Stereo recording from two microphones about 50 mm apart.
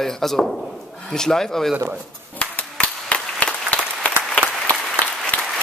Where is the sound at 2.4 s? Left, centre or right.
Left.